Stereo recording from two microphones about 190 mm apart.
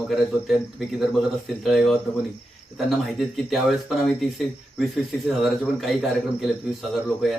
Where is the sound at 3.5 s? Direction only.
Centre (ahead or behind).